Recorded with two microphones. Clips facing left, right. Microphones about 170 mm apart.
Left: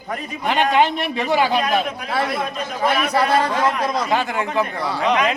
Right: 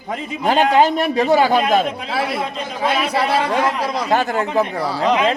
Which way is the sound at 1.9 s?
25° right (ahead or behind).